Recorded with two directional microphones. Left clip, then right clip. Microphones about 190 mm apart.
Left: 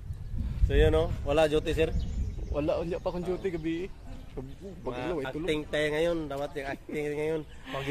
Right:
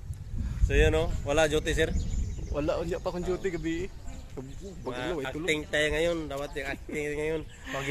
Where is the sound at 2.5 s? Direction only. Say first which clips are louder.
Even; 10° right (ahead or behind).